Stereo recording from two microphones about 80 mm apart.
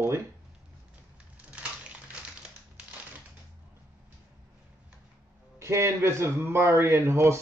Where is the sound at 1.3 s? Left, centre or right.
Centre.